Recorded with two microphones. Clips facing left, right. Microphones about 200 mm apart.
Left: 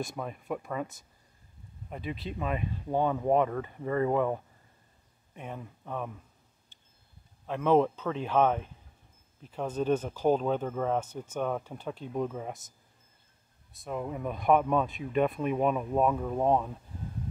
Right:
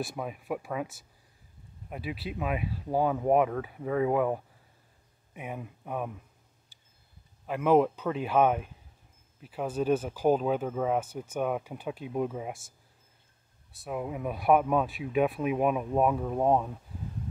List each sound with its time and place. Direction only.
0.0 s speech: 5° right (ahead or behind)
7.4 s speech: 10° right (ahead or behind)
13.8 s speech: 5° right (ahead or behind)